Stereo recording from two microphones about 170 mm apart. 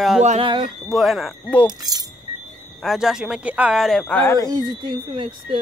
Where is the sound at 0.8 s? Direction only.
Centre (ahead or behind).